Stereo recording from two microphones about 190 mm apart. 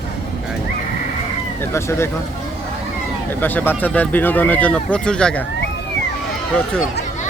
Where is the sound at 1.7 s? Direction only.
15° left (ahead or behind).